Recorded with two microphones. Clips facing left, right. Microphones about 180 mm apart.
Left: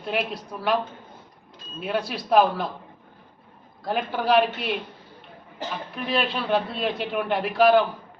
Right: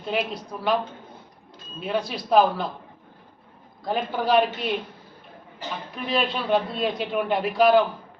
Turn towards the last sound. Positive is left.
turn(degrees=0)  # may be behind; listen again after turning